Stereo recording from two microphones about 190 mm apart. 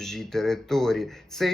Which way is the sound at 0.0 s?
Centre (ahead or behind).